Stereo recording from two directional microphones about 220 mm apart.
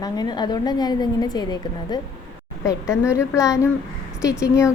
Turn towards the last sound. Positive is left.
turn(degrees=15)  # may be behind; listen again after turning